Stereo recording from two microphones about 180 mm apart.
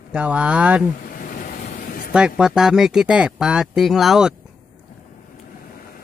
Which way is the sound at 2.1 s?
5° right (ahead or behind).